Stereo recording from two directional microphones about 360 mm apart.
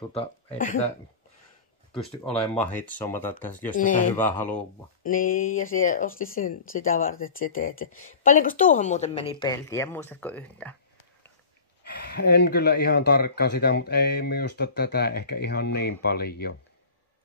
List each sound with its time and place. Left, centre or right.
2.0 s speech: centre
3.7 s speech: left
4.1 s speech: centre
5.0 s speech: left; by 10.8 s centre
11.8 s speech: left